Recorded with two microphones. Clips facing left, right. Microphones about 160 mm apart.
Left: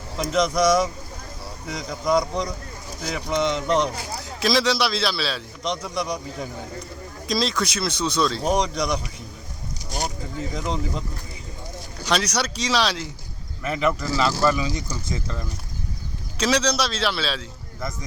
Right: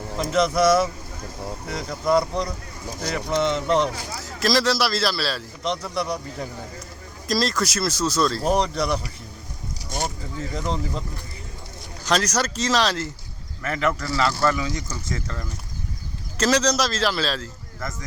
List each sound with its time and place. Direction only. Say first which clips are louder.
0.2 s speech: right 1 dB; 5° right (ahead or behind)
3.0 s speech: right 1 dB; 5° left (ahead or behind)
7.3 s speech: right 1 dB; centre (ahead or behind)
10.5 s speech: right 1 dB; 5° left (ahead or behind)
12.0 s speech: right 1 dB; centre (ahead or behind)
13.6 s speech: left 1 dB; 10° left (ahead or behind)
16.4 s speech: right 1 dB; 5° right (ahead or behind)